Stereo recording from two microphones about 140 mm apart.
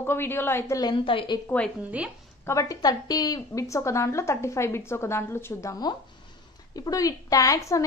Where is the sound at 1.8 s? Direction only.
10° right (ahead or behind).